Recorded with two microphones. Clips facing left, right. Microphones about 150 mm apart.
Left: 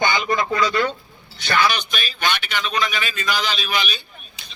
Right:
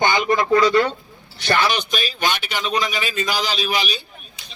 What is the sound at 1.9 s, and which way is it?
Speech, 40° right (ahead or behind).